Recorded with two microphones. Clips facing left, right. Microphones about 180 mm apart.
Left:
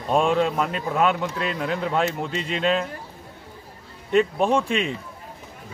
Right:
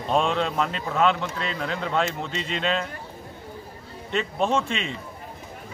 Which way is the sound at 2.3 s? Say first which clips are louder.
Left 2 dB; 40° left (ahead or behind).